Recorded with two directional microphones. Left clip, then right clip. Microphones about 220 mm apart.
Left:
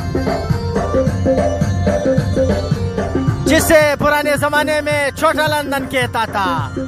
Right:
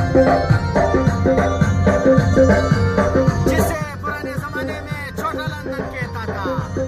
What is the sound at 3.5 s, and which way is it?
Music, 40° left (ahead or behind).